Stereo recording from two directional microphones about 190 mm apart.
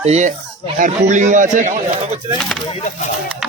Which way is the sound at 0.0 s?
35° right (ahead or behind).